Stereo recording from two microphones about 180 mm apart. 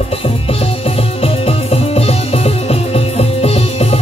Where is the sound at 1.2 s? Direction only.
35° left (ahead or behind).